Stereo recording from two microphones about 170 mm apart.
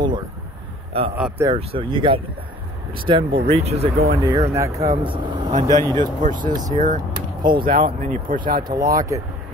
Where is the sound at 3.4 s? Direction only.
35° right (ahead or behind).